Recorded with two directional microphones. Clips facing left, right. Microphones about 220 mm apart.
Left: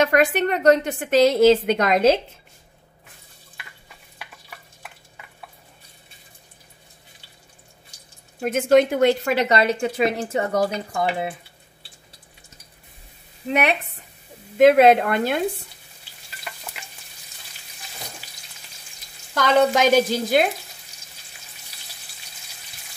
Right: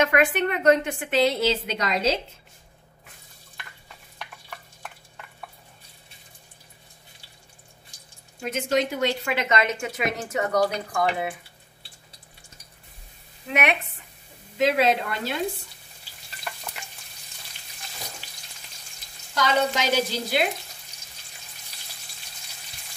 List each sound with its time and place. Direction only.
0.0 s a woman's voice: 35° left (ahead or behind); by 2.1 s 55° left (ahead or behind)
8.4 s a woman's voice: 55° left (ahead or behind); by 11.1 s 25° left (ahead or behind)
13.5 s a woman's voice: 35° left (ahead or behind)
14.6 s speech: 55° left (ahead or behind)
19.3 s speech: 55° left (ahead or behind)